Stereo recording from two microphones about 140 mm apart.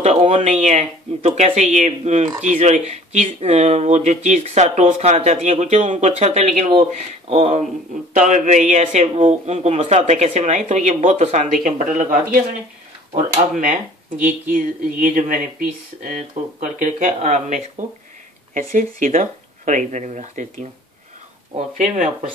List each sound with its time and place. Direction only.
0.0 s speech: 50° right (ahead or behind)
7.2 s speech: 45° right (ahead or behind)
8.1 s speech: 65° right (ahead or behind)
12.0 s speech: 70° right (ahead or behind)
18.5 s speech: 70° right (ahead or behind)